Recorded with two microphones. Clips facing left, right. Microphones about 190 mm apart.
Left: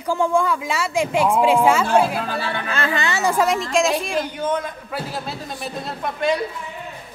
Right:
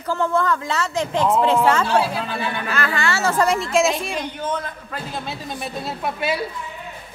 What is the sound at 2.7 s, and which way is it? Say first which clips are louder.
Speech: even; 25° left (ahead or behind).